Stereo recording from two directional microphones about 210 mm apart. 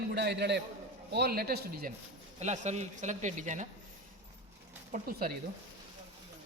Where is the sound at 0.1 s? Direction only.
50° right (ahead or behind).